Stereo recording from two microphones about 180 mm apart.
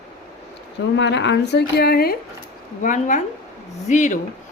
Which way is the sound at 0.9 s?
75° left (ahead or behind).